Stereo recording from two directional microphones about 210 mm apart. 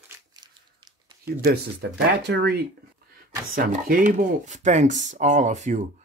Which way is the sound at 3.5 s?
40° right (ahead or behind).